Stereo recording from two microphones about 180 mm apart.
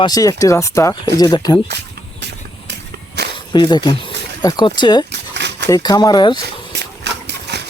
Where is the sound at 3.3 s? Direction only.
25° left (ahead or behind).